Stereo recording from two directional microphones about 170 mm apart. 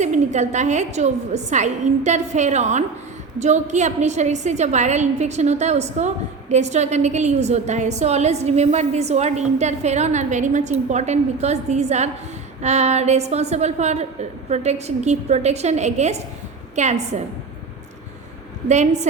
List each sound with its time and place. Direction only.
0.0 s a woman's voice: 45° right (ahead or behind)
18.7 s a woman's voice: 45° right (ahead or behind)